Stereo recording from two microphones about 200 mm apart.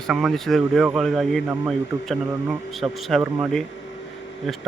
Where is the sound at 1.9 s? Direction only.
20° right (ahead or behind).